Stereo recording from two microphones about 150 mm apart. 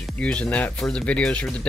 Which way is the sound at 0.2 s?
5° left (ahead or behind).